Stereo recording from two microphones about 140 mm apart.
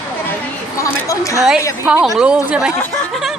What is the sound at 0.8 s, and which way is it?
Speech, 20° left (ahead or behind).